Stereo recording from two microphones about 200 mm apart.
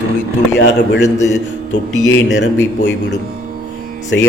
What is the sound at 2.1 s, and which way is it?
Speech, 70° left (ahead or behind).